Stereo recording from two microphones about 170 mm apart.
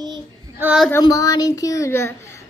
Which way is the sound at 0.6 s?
5° right (ahead or behind).